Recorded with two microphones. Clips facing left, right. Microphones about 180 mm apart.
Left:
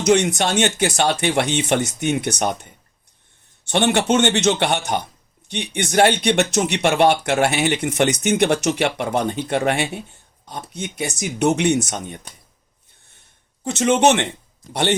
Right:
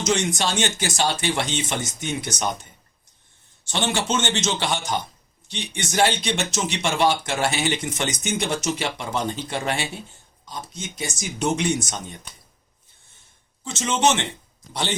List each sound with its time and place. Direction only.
0.0 s speech: 60° left (ahead or behind)
13.7 s speech: 60° left (ahead or behind)